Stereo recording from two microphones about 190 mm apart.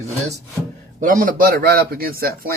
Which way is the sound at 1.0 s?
45° right (ahead or behind).